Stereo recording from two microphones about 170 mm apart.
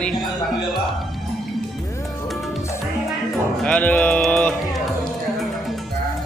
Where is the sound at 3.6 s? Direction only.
10° left (ahead or behind).